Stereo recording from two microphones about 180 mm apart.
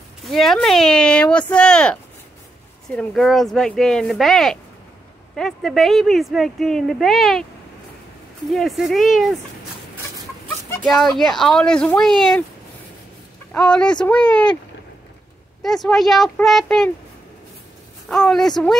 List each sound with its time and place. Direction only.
0.3 s speech: centre (ahead or behind)
3.0 s speech: centre (ahead or behind)
8.5 s speech: centre (ahead or behind)
11.1 s speech: centre (ahead or behind)
13.5 s speech: 5° left (ahead or behind)
15.6 s speech: centre (ahead or behind)
18.1 s speech: 5° left (ahead or behind)